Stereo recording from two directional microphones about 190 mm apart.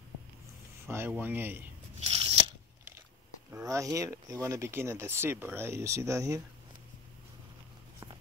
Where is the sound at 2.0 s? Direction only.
30° right (ahead or behind).